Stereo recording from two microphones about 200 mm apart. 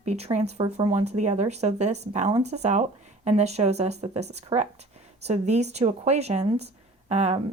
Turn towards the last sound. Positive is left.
turn(degrees=-35)  # may be behind; listen again after turning